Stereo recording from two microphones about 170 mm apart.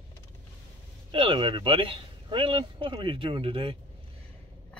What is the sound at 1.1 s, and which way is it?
Speech, 30° right (ahead or behind).